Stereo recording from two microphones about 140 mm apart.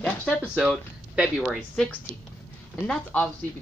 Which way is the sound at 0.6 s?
5° right (ahead or behind).